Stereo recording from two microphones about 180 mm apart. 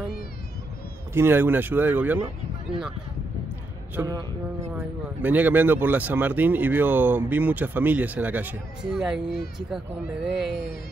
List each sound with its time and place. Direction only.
1.1 s speech: 10° right (ahead or behind)
3.9 s speech: 15° right (ahead or behind)